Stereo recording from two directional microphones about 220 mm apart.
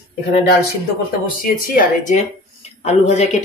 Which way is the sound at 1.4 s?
40° left (ahead or behind).